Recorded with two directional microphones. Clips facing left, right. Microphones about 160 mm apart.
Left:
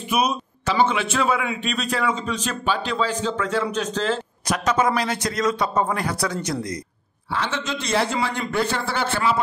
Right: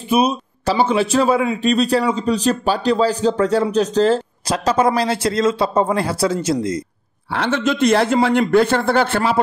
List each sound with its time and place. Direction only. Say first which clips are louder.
0.1 s a man's voice: right 6 dB; 30° right (ahead or behind)
7.3 s a man's voice: right 8 dB; 60° right (ahead or behind)